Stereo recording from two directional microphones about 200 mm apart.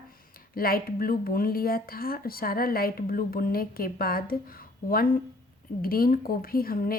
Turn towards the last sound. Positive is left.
turn(degrees=45)  # may be behind; listen again after turning